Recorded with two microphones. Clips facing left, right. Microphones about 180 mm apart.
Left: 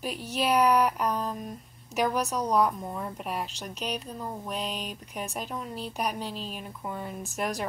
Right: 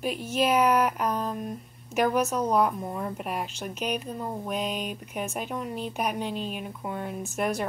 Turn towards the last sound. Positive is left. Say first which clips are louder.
# right 3 dB
turn(degrees=0)  # may be behind; listen again after turning